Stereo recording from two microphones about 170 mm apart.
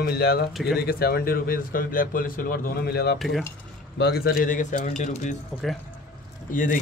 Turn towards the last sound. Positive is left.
turn(degrees=50)  # may be behind; listen again after turning